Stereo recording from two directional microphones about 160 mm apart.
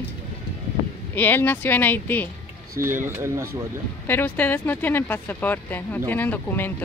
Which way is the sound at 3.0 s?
15° right (ahead or behind).